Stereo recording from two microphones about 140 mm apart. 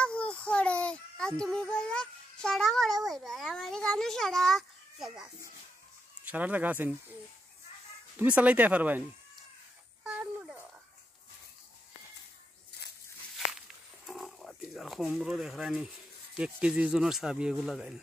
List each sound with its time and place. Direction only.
0.0 s child singing: 5° left (ahead or behind)
6.2 s speech: 10° right (ahead or behind)
8.2 s speech: 10° right (ahead or behind)
10.0 s a sound: 10° right (ahead or behind)
13.5 s a sound: centre (ahead or behind)
16.3 s speech: 10° right (ahead or behind)